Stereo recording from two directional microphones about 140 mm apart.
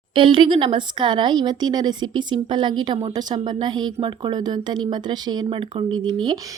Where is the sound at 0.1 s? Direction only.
40° right (ahead or behind).